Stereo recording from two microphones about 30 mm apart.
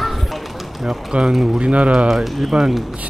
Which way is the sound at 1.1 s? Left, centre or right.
Right.